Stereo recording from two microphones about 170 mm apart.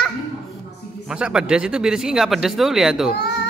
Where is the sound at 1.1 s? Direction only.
5° right (ahead or behind).